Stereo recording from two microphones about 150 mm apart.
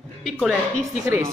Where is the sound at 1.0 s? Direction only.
20° right (ahead or behind).